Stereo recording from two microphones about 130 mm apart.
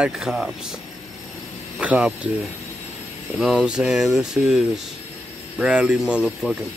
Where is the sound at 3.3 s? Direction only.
Centre (ahead or behind).